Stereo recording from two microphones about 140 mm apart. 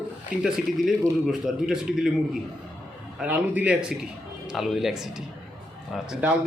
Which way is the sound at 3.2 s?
10° right (ahead or behind).